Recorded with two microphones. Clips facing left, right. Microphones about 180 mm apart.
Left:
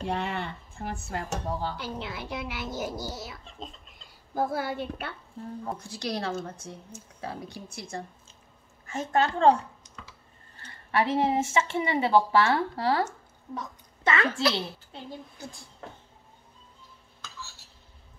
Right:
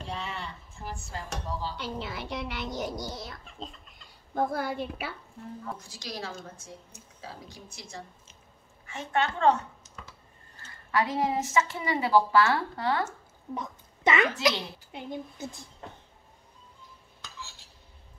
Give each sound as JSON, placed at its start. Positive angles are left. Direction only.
{"t": 0.0, "sound": "speech", "side_deg": 60}
{"t": 1.8, "sound": "speech", "side_deg": 0}
{"t": 5.4, "sound": "a woman's voice", "side_deg": 30}
{"t": 5.9, "sound": "speech", "side_deg": 65}
{"t": 8.8, "sound": "a woman's voice", "side_deg": 40}
{"t": 10.9, "sound": "a woman's voice", "side_deg": 30}
{"t": 13.6, "sound": "a sound", "side_deg": -15}
{"t": 14.9, "sound": "speech", "side_deg": -15}